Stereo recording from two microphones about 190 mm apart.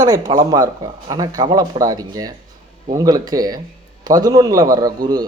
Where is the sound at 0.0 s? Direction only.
20° right (ahead or behind).